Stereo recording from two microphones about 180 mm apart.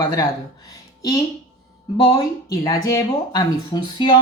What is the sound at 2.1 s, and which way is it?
A woman's voice, 20° left (ahead or behind).